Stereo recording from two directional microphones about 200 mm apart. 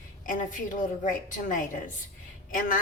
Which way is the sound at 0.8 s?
40° left (ahead or behind).